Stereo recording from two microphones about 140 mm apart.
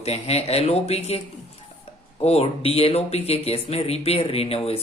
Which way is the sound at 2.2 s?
45° left (ahead or behind).